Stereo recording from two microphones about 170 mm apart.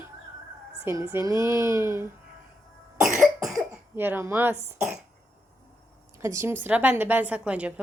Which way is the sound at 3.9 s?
15° right (ahead or behind).